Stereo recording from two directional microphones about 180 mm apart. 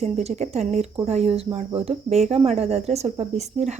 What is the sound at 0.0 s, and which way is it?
Speech, 35° right (ahead or behind).